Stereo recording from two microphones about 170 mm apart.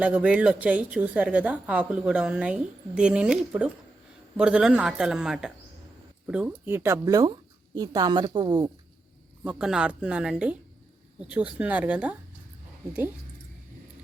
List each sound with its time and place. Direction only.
0.0 s a woman's voice: 5° right (ahead or behind); by 8.7 s 25° right (ahead or behind)
9.4 s a woman's voice: 5° right (ahead or behind)